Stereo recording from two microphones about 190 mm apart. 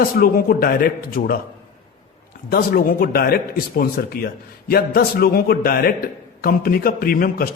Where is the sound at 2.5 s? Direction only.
50° left (ahead or behind).